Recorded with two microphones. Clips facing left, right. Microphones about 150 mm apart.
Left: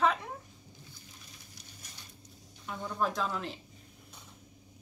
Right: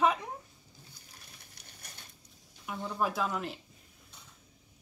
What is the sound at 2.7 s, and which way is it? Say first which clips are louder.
Speech: even; 10° right (ahead or behind).